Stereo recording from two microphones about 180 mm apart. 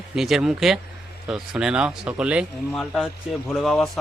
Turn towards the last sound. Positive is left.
turn(degrees=0)  # may be behind; listen again after turning